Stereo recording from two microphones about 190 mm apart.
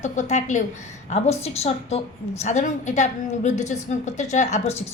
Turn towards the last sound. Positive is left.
turn(degrees=35)  # may be behind; listen again after turning